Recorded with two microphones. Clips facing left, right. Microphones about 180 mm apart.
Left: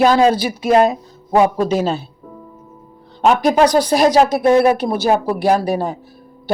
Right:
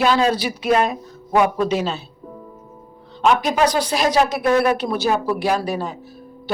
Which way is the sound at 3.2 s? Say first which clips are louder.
Left 4 dB; 45° left (ahead or behind).